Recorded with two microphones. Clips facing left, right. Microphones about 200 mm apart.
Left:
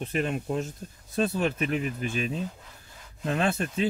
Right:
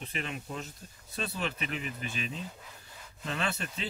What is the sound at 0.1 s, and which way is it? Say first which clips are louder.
Speech: left 10 dB; 45° left (ahead or behind).